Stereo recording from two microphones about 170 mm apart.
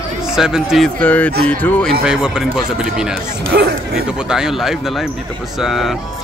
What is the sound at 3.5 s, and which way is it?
Speech, 65° right (ahead or behind).